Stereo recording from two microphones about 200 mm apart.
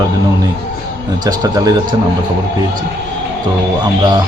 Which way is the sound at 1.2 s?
20° right (ahead or behind).